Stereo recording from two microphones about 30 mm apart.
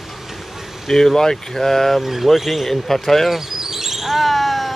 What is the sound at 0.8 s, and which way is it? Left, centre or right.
Speech, centre.